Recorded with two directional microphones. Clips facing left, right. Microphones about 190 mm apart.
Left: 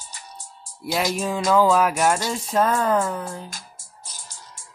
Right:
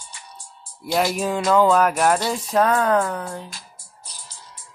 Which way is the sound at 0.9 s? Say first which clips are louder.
Right 2 dB; 5° right (ahead or behind).